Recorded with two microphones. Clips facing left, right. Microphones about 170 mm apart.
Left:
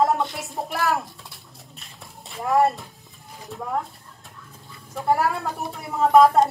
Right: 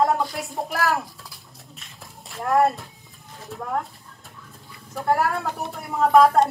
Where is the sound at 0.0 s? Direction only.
Centre (ahead or behind).